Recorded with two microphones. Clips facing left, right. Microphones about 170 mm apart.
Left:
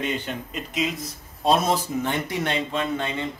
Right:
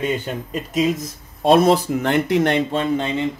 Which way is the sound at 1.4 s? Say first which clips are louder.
Right 7 dB; 60° right (ahead or behind).